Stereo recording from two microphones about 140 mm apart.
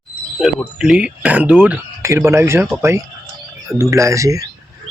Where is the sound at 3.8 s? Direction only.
20° right (ahead or behind).